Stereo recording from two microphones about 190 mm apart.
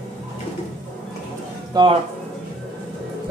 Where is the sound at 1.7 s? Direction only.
20° right (ahead or behind).